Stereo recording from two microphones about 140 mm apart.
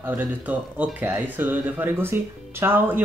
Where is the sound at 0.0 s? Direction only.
10° right (ahead or behind).